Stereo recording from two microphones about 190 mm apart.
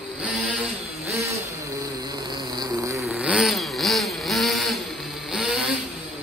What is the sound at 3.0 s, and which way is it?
Vehicle, 5° right (ahead or behind).